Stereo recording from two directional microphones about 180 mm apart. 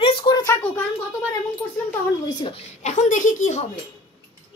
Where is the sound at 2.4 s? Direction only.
35° left (ahead or behind).